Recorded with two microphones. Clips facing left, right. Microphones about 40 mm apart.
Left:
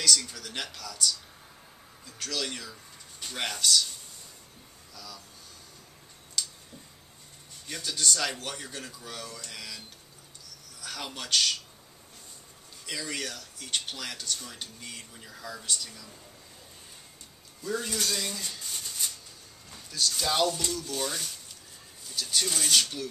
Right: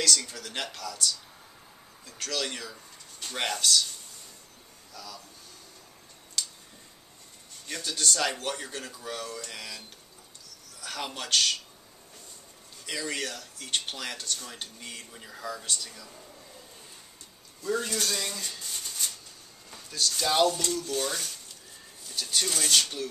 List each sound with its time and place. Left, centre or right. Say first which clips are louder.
0.4 s speech: right 2 dB; centre
4.9 s speech: right 2 dB; centre
6.4 s tick-tock: even; centre
7.6 s speech: even; centre
12.8 s speech: right 2 dB; centre
17.6 s speech: right 2 dB; centre